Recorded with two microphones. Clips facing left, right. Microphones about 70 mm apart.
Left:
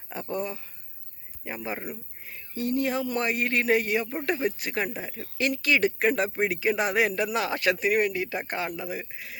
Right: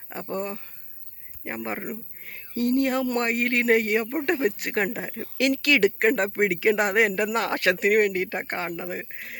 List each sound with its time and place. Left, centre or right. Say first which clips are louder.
0.1 s speech: right 1 dB; right
5.4 s speech: right 3 dB; right